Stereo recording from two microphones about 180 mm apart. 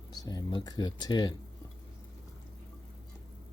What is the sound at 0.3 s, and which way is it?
Speech, 20° left (ahead or behind).